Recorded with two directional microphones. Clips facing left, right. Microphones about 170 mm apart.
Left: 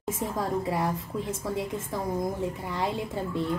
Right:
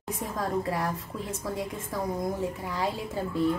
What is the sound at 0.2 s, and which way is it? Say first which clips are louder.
Speech: left 4 dB; 25° left (ahead or behind).